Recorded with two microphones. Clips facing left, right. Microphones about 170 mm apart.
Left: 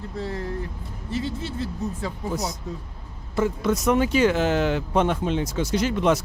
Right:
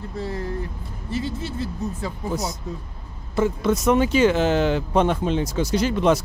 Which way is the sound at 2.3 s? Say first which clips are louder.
Right 1 dB; 25° right (ahead or behind).